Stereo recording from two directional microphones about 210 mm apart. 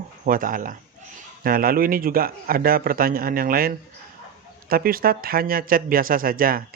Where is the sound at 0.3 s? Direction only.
40° right (ahead or behind).